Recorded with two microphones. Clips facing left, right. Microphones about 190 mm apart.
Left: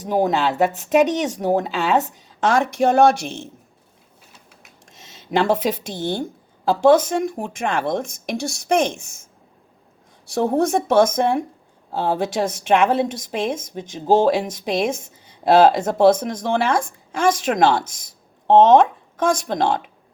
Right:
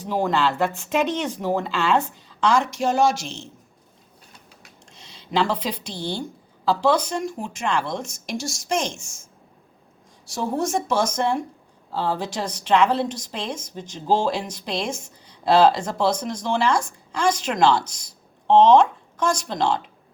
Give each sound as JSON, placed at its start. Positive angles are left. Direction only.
{"t": 0.7, "sound": "a woman's voice", "side_deg": 40}
{"t": 4.9, "sound": "speech", "side_deg": 50}
{"t": 10.2, "sound": "a woman's voice", "side_deg": 60}